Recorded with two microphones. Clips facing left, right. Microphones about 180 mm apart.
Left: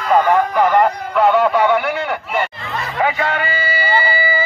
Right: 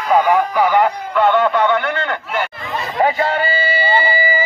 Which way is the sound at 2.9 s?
35° right (ahead or behind).